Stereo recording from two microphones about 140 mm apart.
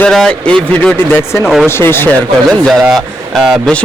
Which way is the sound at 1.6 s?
15° left (ahead or behind).